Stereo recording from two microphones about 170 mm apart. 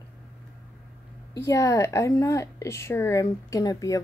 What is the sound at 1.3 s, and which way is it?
A woman's voice, 15° left (ahead or behind).